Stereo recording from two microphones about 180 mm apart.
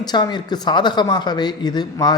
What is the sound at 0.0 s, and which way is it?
Speech, 25° left (ahead or behind).